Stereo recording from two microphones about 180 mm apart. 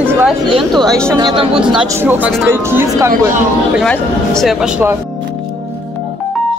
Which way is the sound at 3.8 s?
Centre (ahead or behind).